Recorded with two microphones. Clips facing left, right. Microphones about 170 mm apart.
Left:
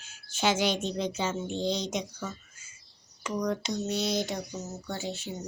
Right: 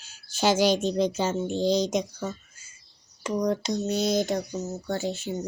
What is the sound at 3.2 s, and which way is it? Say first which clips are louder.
Speech: right 5 dB; 35° right (ahead or behind).